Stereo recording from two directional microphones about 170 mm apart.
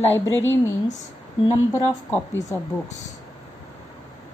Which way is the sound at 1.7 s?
15° left (ahead or behind).